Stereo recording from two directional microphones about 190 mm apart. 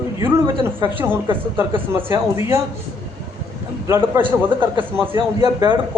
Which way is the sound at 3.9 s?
15° right (ahead or behind).